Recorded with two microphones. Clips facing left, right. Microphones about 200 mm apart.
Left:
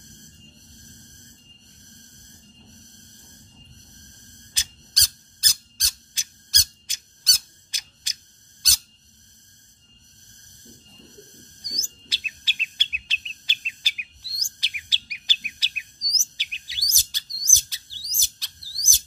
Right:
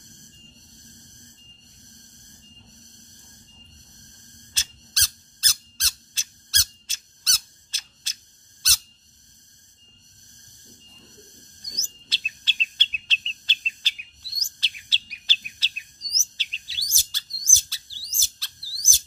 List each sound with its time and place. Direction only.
4.6 s squeak: 15° left (ahead or behind)
8.6 s a sound: 15° left (ahead or behind)
11.6 s chirp: 10° left (ahead or behind)